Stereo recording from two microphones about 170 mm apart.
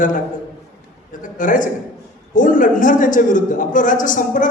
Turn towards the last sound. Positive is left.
turn(degrees=50)  # may be behind; listen again after turning